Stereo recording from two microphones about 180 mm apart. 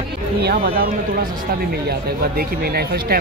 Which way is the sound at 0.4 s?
60° right (ahead or behind).